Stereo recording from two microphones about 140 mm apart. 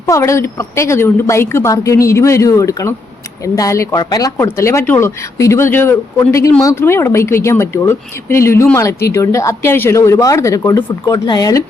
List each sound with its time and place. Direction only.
0.0 s speech: 20° left (ahead or behind)